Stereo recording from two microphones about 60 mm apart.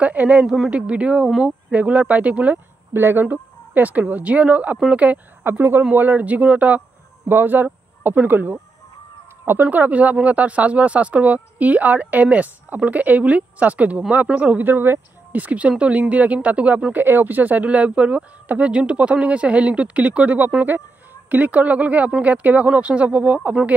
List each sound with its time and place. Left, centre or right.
0.0 s speech: right
2.9 s speech: right
5.4 s speech: right
9.7 s speech: right
14.7 s speech: right
15.4 s speech: right